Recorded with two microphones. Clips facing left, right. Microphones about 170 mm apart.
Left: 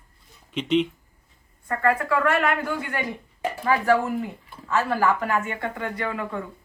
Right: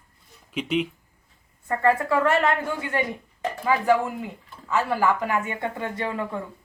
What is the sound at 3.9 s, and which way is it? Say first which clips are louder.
Speech: even; 15° right (ahead or behind).